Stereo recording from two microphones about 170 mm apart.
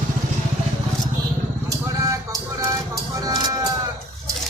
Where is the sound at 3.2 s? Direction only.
20° right (ahead or behind).